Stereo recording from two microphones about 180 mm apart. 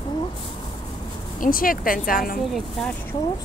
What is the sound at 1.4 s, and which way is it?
Speech, 50° left (ahead or behind).